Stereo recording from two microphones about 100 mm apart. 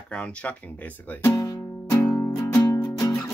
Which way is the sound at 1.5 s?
25° left (ahead or behind).